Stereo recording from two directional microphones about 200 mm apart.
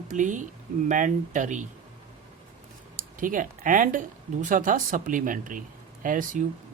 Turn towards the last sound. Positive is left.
turn(degrees=-40)  # may be behind; listen again after turning